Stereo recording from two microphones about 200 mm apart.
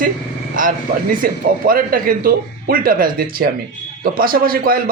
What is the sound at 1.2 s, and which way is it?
A man's voice, 45° right (ahead or behind).